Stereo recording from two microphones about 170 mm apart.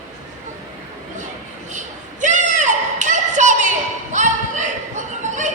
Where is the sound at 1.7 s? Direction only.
45° right (ahead or behind).